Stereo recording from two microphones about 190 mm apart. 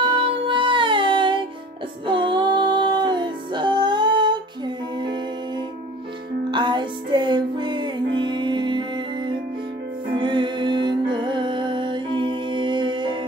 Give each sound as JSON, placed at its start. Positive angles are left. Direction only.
{"t": 0.0, "sound": "music", "side_deg": -25}
{"t": 6.5, "sound": "music", "side_deg": -25}